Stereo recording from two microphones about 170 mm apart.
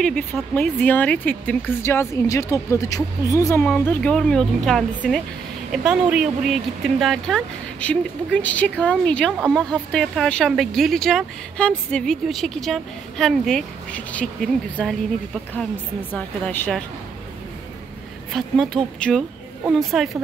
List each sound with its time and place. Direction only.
0.0 s speech: 5° left (ahead or behind)
3.6 s speech: 5° left (ahead or behind)
16.1 s speech: 10° left (ahead or behind)
18.3 s speech: centre (ahead or behind)